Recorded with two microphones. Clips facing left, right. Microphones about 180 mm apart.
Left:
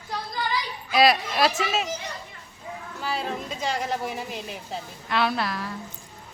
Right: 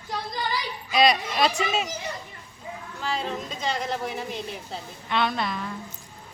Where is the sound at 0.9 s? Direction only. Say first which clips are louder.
Left 1 dB; 5° left (ahead or behind).